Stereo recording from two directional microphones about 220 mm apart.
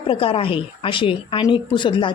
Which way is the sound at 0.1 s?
25° left (ahead or behind).